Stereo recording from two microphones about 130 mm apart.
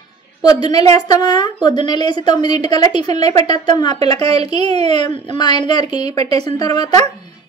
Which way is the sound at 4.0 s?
50° right (ahead or behind).